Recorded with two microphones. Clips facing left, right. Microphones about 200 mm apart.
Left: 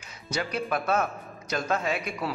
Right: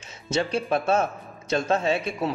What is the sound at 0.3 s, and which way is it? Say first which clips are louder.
A man's voice: right 5 dB; 25° right (ahead or behind).